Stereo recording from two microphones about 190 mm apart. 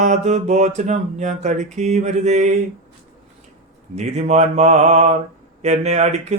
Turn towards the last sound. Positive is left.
turn(degrees=-35)  # may be behind; listen again after turning